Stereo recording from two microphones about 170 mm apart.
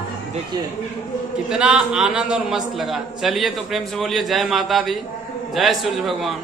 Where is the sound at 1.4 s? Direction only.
5° right (ahead or behind).